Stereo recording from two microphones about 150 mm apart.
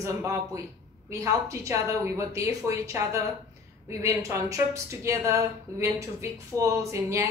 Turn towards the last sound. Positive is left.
turn(degrees=-20)  # may be behind; listen again after turning